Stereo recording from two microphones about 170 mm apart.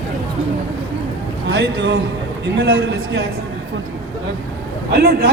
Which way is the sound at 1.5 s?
90° right.